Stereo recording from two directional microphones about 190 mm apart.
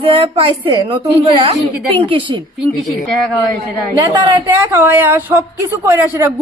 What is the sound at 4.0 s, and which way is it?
Speech, 20° right (ahead or behind).